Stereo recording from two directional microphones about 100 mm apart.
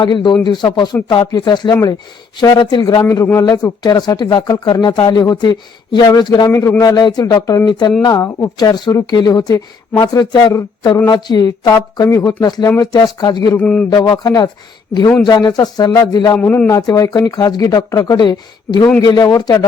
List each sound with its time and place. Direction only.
0.0 s speech: 50° left (ahead or behind)
1.7 s speech: 35° left (ahead or behind)
2.4 s speech: 45° left (ahead or behind)
3.0 s speech: 25° left (ahead or behind); by 6.5 s 40° left (ahead or behind)
6.5 s speech: 30° left (ahead or behind)
7.7 s speech: 50° left (ahead or behind)
8.0 s speech: 35° left (ahead or behind)
11.1 s speech: 40° left (ahead or behind)
16.4 s a man's voice: 20° left (ahead or behind)
16.7 s speech: 35° left (ahead or behind)